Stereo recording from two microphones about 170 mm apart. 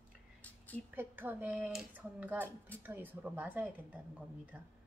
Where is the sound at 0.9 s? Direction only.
10° right (ahead or behind).